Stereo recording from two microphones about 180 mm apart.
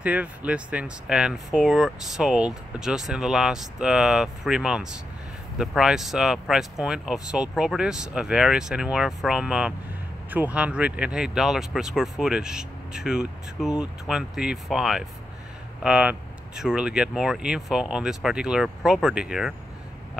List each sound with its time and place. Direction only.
0.0 s speech: 10° right (ahead or behind)